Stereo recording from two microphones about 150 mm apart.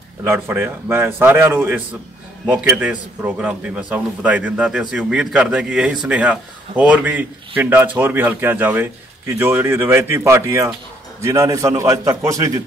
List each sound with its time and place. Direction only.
0.2 s a man's voice: 15° right (ahead or behind)